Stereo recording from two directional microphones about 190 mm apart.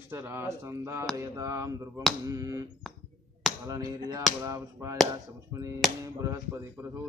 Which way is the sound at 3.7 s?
20° right (ahead or behind).